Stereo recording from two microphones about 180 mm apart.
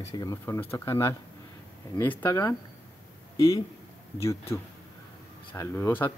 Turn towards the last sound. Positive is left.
turn(degrees=15)  # may be behind; listen again after turning